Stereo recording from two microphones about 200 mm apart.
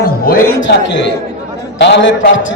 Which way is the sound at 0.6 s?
65° left (ahead or behind).